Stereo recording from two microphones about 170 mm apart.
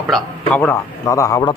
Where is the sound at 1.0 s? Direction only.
20° left (ahead or behind).